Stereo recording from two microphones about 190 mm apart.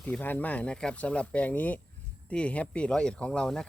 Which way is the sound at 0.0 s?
10° left (ahead or behind).